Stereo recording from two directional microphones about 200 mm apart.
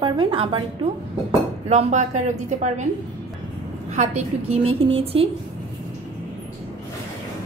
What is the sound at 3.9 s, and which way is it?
Speech, 35° right (ahead or behind).